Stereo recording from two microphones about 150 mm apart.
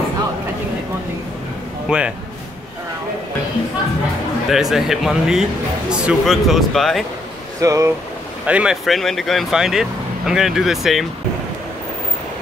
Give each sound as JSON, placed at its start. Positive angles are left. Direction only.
{"t": 1.9, "sound": "speech", "side_deg": -10}
{"t": 4.5, "sound": "speech", "side_deg": 0}
{"t": 7.6, "sound": "speech", "side_deg": -20}
{"t": 8.5, "sound": "speech", "side_deg": -5}